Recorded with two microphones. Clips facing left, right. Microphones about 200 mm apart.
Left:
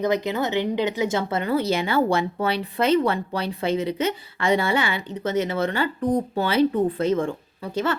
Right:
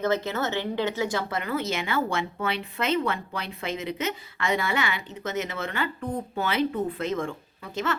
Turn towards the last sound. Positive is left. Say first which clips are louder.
# left 5 dB
turn(degrees=30)  # may be behind; listen again after turning